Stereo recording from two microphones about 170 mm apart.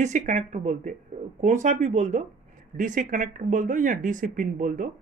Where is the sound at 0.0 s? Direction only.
45° right (ahead or behind).